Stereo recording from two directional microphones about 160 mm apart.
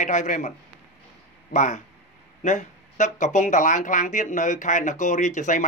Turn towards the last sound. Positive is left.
turn(degrees=50)  # may be behind; listen again after turning